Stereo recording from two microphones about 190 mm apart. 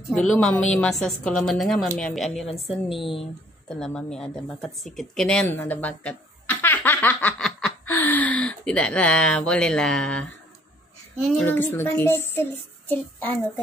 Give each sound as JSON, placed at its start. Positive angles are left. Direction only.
{"t": 0.1, "sound": "speech", "side_deg": 5}
{"t": 3.0, "sound": "speech", "side_deg": 30}
{"t": 3.6, "sound": "speech", "side_deg": 5}
{"t": 11.3, "sound": "speech", "side_deg": 10}